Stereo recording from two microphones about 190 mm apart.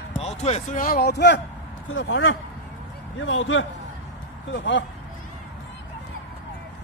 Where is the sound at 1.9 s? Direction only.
85° left.